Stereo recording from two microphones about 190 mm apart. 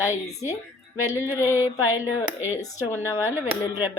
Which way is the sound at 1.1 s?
10° right (ahead or behind).